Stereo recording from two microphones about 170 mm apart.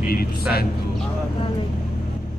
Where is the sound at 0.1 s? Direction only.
65° left (ahead or behind).